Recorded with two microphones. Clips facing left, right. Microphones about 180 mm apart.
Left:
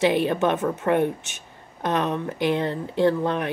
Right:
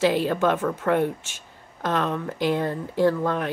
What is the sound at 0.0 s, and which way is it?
Speech, 20° left (ahead or behind).